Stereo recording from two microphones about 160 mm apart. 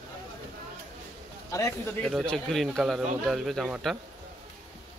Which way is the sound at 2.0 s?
Centre (ahead or behind).